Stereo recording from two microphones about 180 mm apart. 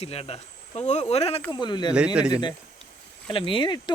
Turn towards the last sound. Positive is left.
turn(degrees=25)  # may be behind; listen again after turning